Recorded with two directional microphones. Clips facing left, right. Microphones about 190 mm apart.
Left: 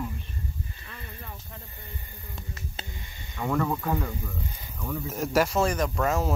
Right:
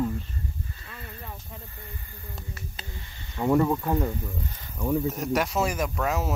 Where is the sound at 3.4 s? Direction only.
20° right (ahead or behind).